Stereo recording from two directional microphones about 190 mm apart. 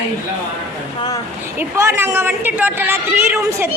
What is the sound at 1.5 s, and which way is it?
A woman's voice, 15° right (ahead or behind).